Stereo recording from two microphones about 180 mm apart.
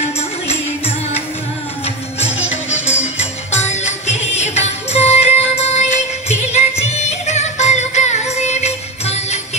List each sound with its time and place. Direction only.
0.5 s music: 35° left (ahead or behind)
3.5 s music: 40° left (ahead or behind)